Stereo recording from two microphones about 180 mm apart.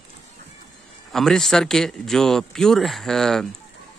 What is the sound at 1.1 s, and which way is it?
Speech, 5° left (ahead or behind).